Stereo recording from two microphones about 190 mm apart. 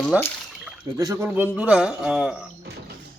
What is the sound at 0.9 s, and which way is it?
A man's voice, 15° right (ahead or behind).